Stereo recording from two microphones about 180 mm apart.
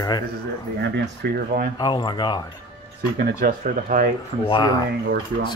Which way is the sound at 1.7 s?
25° left (ahead or behind).